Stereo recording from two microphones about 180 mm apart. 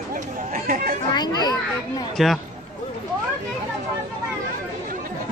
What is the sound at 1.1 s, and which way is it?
Speech, 25° left (ahead or behind).